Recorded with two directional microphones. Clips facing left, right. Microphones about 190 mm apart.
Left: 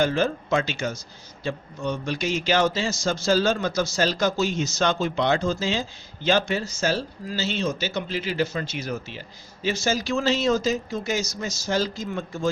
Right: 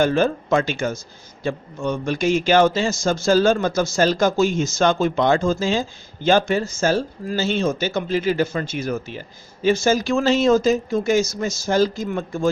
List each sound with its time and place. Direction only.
0.0 s a man's voice: 50° right (ahead or behind)